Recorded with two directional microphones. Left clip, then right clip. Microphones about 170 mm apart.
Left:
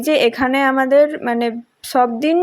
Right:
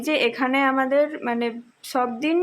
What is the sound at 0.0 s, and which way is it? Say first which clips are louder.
Speech: left 7 dB; 30° left (ahead or behind).